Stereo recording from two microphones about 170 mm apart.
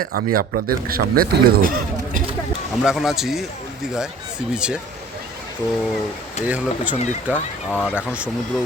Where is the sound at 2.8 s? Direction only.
Centre (ahead or behind).